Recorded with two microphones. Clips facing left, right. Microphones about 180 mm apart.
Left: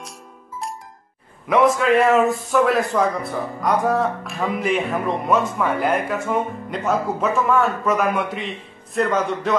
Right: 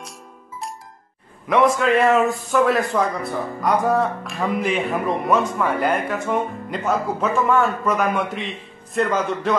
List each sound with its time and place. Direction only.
1.5 s speech: centre (ahead or behind)